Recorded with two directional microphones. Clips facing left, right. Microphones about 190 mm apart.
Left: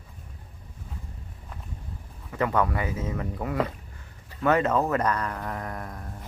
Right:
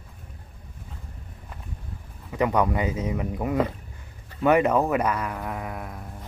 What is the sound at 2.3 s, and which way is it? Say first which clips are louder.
Speech: right 3 dB; 15° right (ahead or behind).